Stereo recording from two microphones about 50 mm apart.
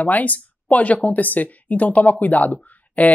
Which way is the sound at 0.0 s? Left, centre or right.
Left.